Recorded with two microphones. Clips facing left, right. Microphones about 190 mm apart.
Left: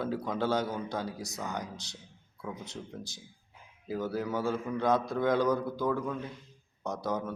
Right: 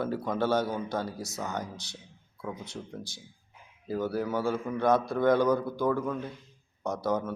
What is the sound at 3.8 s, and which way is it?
Speech, centre (ahead or behind).